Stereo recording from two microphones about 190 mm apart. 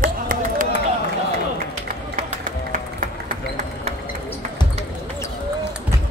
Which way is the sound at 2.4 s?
45° right (ahead or behind).